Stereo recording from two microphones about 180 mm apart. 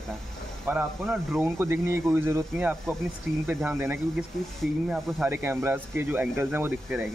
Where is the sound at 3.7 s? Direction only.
15° right (ahead or behind).